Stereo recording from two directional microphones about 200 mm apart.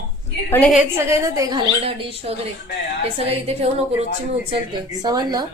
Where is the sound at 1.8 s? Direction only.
30° right (ahead or behind).